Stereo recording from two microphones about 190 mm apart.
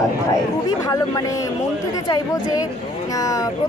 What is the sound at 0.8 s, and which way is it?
Speech, 20° left (ahead or behind).